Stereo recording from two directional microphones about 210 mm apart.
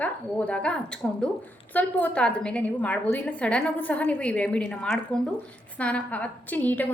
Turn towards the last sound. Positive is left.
turn(degrees=10)  # may be behind; listen again after turning